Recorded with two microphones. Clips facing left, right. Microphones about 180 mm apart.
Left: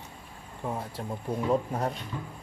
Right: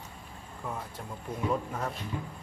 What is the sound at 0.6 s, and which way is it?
Speech, 30° left (ahead or behind).